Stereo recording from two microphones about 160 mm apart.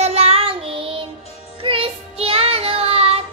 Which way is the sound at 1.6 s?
35° right (ahead or behind).